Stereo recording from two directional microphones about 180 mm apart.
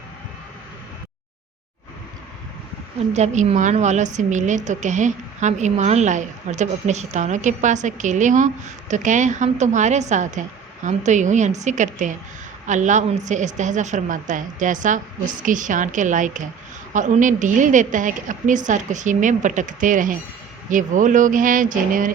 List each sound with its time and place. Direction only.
3.1 s a woman's voice: 40° right (ahead or behind)